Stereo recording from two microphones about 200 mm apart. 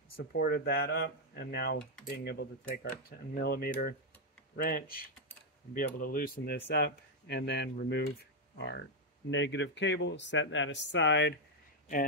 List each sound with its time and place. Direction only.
0.2 s speech: 50° left (ahead or behind)